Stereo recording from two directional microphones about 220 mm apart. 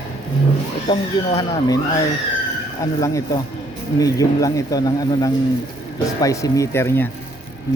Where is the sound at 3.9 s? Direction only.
15° left (ahead or behind).